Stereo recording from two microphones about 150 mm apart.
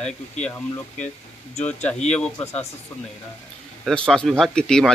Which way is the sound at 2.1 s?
10° left (ahead or behind).